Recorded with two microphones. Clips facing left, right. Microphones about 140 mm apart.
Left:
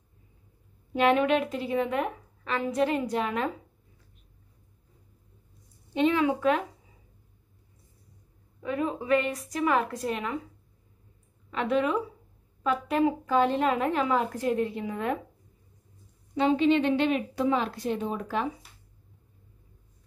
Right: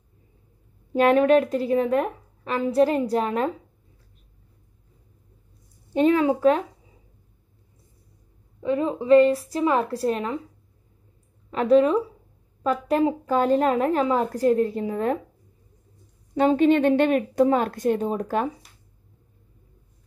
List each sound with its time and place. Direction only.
0.9 s a woman's voice: 40° right (ahead or behind)
5.9 s a woman's voice: 40° right (ahead or behind)
8.6 s a woman's voice: 25° right (ahead or behind)
11.5 s a woman's voice: 35° right (ahead or behind)
16.3 s a woman's voice: 50° right (ahead or behind)